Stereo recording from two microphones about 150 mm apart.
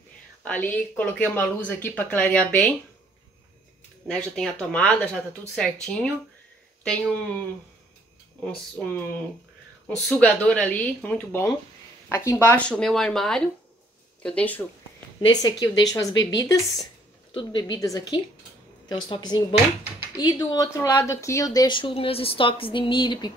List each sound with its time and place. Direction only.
0.4 s speech: 10° left (ahead or behind)
4.1 s speech: 5° left (ahead or behind)
8.5 s speech: 5° left (ahead or behind)
15.1 s a woman's voice: 30° left (ahead or behind)